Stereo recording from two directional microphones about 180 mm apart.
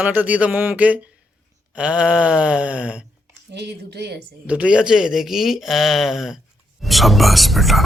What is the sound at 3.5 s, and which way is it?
Speech, 70° right (ahead or behind).